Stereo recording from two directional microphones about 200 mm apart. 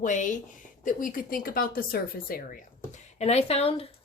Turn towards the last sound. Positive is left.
turn(degrees=30)  # may be behind; listen again after turning